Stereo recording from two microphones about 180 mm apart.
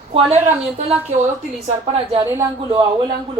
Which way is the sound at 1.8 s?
35° right (ahead or behind).